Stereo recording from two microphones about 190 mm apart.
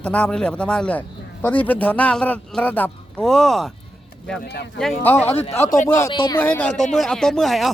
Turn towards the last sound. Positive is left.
turn(degrees=0)  # may be behind; listen again after turning